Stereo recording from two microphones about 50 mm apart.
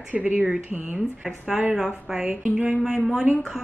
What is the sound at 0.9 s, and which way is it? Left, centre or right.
A woman's voice, centre.